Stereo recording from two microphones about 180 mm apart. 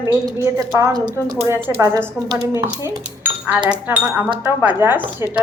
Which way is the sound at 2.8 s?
15° right (ahead or behind).